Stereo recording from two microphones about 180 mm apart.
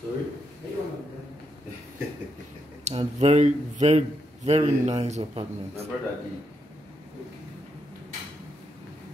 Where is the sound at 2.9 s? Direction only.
35° right (ahead or behind).